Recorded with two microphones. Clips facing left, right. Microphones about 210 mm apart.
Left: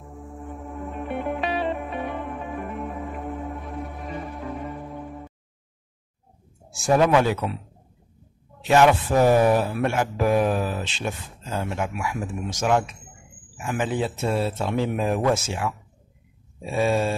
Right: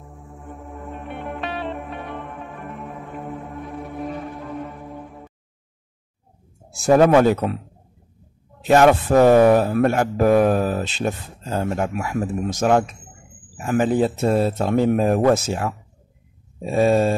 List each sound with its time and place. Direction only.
0.1 s music: centre (ahead or behind)
6.7 s speech: 40° right (ahead or behind)
8.6 s a man's voice: 40° right (ahead or behind)